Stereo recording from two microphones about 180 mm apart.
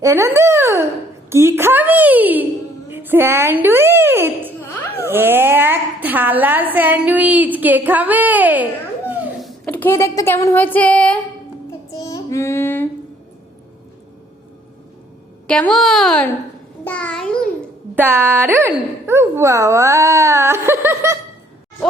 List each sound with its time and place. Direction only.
0.0 s a woman's voice: 15° right (ahead or behind)
4.6 s a sound: 15° left (ahead or behind)
5.0 s a woman's voice: 10° right (ahead or behind); by 11.2 s 5° left (ahead or behind)
11.9 s child singing: 20° left (ahead or behind)
15.4 s a woman's voice: 5° left (ahead or behind)
16.8 s a sound: 10° left (ahead or behind)
17.9 s a woman's voice: 10° right (ahead or behind)